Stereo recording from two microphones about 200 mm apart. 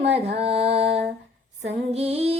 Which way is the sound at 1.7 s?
30° right (ahead or behind).